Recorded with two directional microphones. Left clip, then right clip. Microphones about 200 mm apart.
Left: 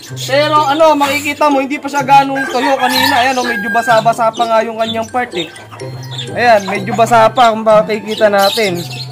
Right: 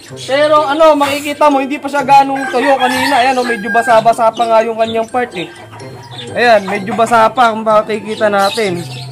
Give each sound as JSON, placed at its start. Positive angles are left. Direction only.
{"t": 0.3, "sound": "speech", "side_deg": -10}
{"t": 7.0, "sound": "speech", "side_deg": 20}